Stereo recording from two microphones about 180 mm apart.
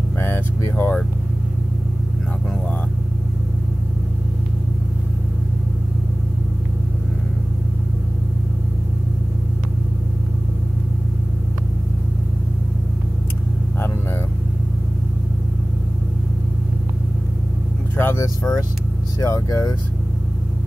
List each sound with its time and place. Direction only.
0.2 s vehicle: 10° left (ahead or behind)
13.7 s a sound: 15° left (ahead or behind)
17.9 s vehicle: 15° left (ahead or behind)